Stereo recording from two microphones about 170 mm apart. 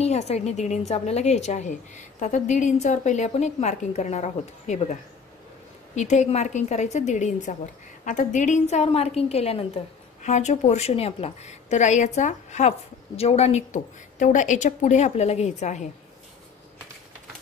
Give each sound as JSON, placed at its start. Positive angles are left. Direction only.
{"t": 0.0, "sound": "a woman's voice", "side_deg": 40}
{"t": 5.9, "sound": "a woman's voice", "side_deg": 45}